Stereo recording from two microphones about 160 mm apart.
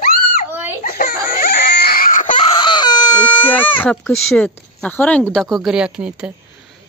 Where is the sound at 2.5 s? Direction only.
30° left (ahead or behind).